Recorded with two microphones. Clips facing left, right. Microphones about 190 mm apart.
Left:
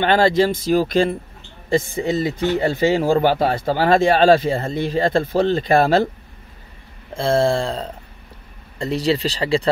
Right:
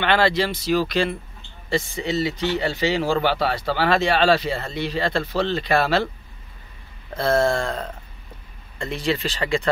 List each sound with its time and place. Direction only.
0.0 s speech: 45° left (ahead or behind)
7.2 s a sound: 30° left (ahead or behind)
8.7 s speech: 35° left (ahead or behind)